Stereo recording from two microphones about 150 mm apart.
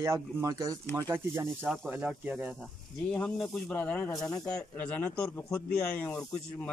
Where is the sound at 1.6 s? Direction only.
5° left (ahead or behind).